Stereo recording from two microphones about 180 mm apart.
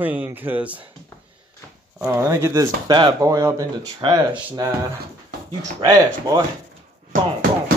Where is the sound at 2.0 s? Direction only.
15° right (ahead or behind).